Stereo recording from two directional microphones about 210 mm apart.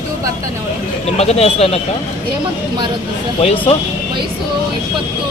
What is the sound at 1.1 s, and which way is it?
Speech, 30° left (ahead or behind).